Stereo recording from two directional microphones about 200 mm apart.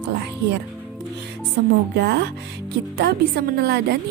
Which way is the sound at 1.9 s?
55° right (ahead or behind).